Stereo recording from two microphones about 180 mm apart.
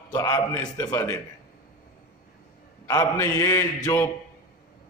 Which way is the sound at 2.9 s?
20° left (ahead or behind).